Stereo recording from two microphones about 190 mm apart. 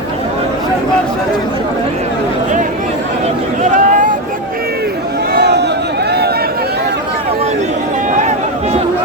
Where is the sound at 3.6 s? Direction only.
40° right (ahead or behind).